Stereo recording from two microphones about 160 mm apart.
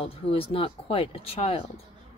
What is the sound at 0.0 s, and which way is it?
Speech, 35° left (ahead or behind).